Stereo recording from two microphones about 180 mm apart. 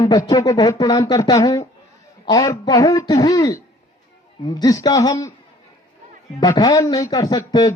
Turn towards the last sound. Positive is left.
turn(degrees=20)  # may be behind; listen again after turning